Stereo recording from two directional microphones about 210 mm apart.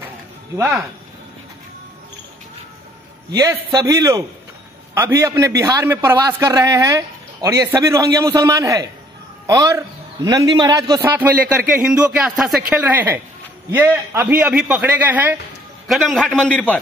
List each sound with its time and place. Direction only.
0.6 s a man's voice: 10° right (ahead or behind)
3.3 s a man's voice: 15° right (ahead or behind); by 16.7 s 5° left (ahead or behind)